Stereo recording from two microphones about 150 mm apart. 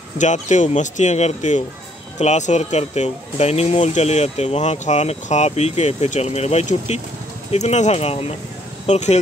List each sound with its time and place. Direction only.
0.2 s speech: 50° left (ahead or behind)